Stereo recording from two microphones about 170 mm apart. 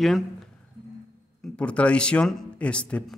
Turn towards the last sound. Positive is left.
turn(degrees=5)  # may be behind; listen again after turning